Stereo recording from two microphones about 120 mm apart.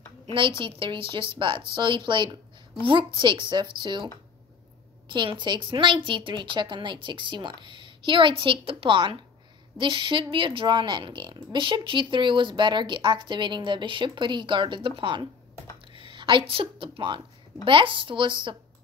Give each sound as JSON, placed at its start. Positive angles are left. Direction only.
{"t": 0.3, "sound": "a woman's voice", "side_deg": -50}